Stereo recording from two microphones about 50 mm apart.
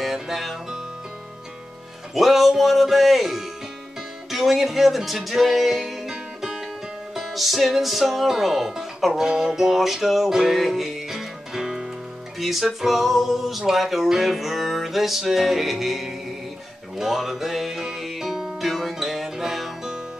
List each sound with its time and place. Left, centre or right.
0.0 s music: centre
2.1 s music: centre
18.7 s music: centre